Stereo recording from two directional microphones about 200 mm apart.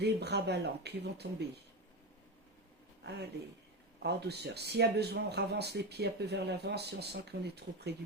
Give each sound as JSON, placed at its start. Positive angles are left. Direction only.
{"t": 0.0, "sound": "speech", "side_deg": -55}
{"t": 3.0, "sound": "speech", "side_deg": -55}